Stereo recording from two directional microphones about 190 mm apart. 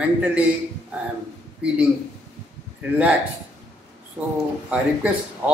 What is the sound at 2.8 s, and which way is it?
Speech, 5° right (ahead or behind).